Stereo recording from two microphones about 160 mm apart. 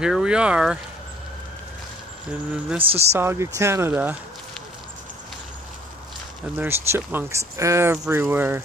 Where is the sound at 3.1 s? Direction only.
15° right (ahead or behind).